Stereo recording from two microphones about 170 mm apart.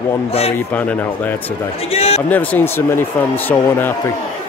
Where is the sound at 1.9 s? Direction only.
35° left (ahead or behind).